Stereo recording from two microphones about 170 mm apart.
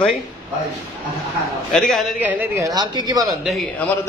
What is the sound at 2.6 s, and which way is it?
Speech, 25° right (ahead or behind).